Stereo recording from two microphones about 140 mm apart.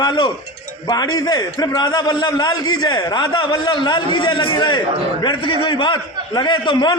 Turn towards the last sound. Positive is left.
turn(degrees=30)  # may be behind; listen again after turning